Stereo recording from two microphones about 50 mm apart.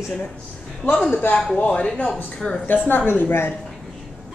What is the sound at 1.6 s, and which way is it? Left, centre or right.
A woman's voice, left.